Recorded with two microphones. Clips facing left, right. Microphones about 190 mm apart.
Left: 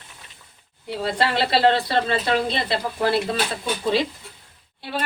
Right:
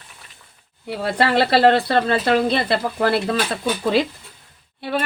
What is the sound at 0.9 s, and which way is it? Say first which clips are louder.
Speech: right 3 dB; 60° right (ahead or behind).